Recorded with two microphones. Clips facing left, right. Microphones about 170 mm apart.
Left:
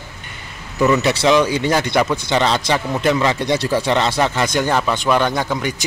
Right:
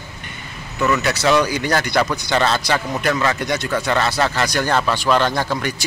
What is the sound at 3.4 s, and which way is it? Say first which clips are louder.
A man's voice: left 3 dB; 30° left (ahead or behind).